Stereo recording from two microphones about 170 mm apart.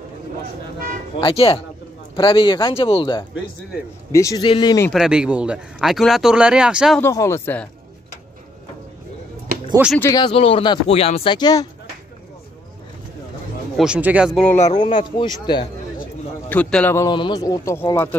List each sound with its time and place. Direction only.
1.2 s speech: 35° left (ahead or behind)
4.9 s speech: 5° right (ahead or behind)
7.0 s speech: 15° left (ahead or behind)
9.9 s speech: 15° left (ahead or behind)
10.2 s speech: 35° left (ahead or behind)
13.7 s speech: 5° right (ahead or behind)
14.8 s speech: 30° left (ahead or behind)
16.4 s speech: 10° left (ahead or behind)
17.1 s speech: 30° left (ahead or behind)